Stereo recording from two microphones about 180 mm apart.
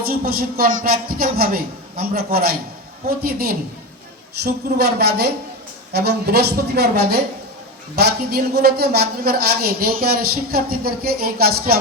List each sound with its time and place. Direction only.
0.1 s a woman's voice: 55° right (ahead or behind)